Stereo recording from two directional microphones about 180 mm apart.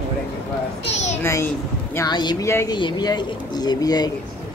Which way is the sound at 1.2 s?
15° left (ahead or behind).